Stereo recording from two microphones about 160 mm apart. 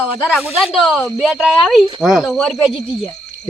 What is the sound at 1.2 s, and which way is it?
Speech, centre (ahead or behind).